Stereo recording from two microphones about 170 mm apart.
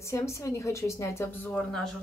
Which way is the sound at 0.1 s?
15° left (ahead or behind).